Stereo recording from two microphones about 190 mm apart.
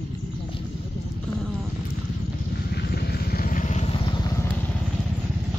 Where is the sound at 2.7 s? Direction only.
55° left (ahead or behind); by 4.5 s 15° left (ahead or behind).